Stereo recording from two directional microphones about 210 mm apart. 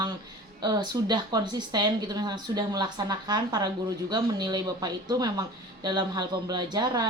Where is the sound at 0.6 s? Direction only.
20° right (ahead or behind).